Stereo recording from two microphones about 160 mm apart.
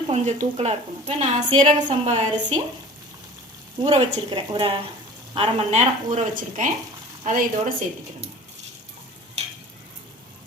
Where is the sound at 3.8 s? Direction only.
35° right (ahead or behind).